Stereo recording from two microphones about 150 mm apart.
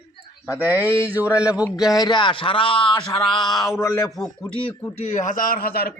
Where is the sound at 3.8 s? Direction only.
20° left (ahead or behind).